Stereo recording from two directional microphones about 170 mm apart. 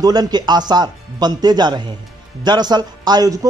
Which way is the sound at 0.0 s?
25° right (ahead or behind).